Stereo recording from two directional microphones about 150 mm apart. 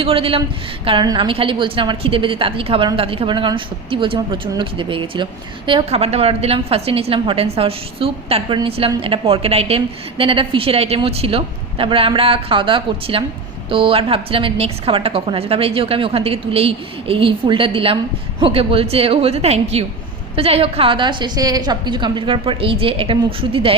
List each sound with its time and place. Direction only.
0.0 s a woman's voice: 40° right (ahead or behind)